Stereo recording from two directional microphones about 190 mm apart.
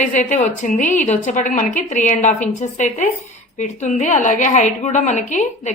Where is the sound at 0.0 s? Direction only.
40° left (ahead or behind).